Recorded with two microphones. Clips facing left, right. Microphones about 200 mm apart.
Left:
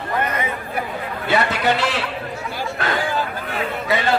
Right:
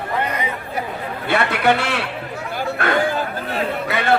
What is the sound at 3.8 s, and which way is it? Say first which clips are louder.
Chatter: even; 60° right (ahead or behind).